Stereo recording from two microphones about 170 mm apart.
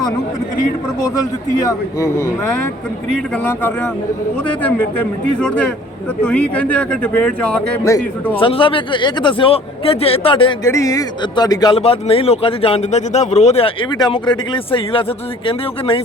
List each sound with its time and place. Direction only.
1.6 s speech: 20° left (ahead or behind)
6.2 s speech: 5° left (ahead or behind)
8.4 s speech: 30° left (ahead or behind)
10.6 s speech: 20° left (ahead or behind)
11.8 s speech: 35° left (ahead or behind)